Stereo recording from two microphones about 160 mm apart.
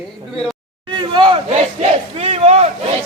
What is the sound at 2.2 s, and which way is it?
Battle cry, 40° right (ahead or behind).